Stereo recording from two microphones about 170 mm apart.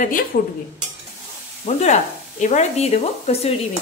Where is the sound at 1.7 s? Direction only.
40° left (ahead or behind).